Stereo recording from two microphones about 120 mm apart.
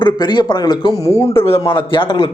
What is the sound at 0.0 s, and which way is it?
Speech, 40° left (ahead or behind).